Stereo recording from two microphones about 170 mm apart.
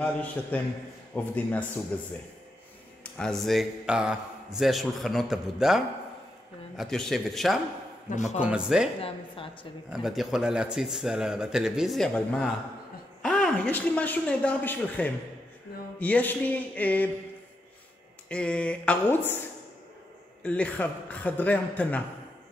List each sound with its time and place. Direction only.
0.0 s speech: 10° left (ahead or behind)
8.1 s speech: 45° left (ahead or behind)
8.4 s speech: 5° right (ahead or behind)
9.0 s a woman's voice: 30° left (ahead or behind)
9.8 s speech: centre (ahead or behind)
18.3 s speech: 5° left (ahead or behind)
20.4 s speech: 10° left (ahead or behind)